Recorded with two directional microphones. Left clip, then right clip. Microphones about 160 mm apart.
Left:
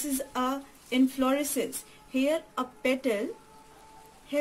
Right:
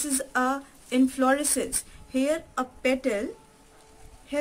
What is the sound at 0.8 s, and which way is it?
A woman's voice, 30° right (ahead or behind).